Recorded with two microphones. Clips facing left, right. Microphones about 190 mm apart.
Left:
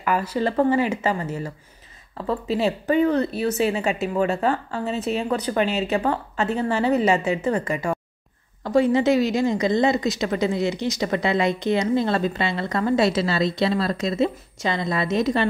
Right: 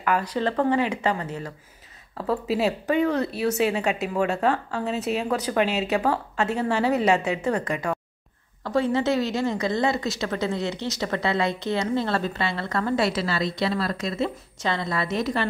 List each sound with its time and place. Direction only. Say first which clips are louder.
0.0 s speech: left 1 dB; 5° left (ahead or behind); by 15.4 s 20° left (ahead or behind)